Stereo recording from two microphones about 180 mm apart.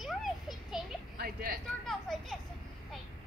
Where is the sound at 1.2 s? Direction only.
60° right (ahead or behind).